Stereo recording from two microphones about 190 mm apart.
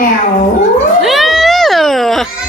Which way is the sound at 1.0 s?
Centre (ahead or behind).